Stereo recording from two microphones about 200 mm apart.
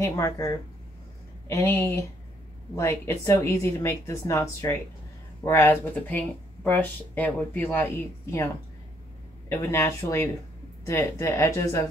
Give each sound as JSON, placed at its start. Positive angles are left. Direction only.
{"t": 0.0, "sound": "speech", "side_deg": 15}
{"t": 9.5, "sound": "speech", "side_deg": 10}